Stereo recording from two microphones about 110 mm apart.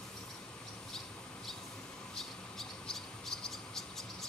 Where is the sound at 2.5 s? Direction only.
5° left (ahead or behind).